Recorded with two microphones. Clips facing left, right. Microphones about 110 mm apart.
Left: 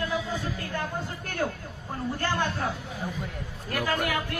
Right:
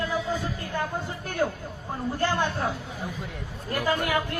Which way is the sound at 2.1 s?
15° right (ahead or behind).